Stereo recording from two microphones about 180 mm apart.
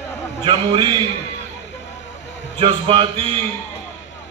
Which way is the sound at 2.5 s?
30° right (ahead or behind).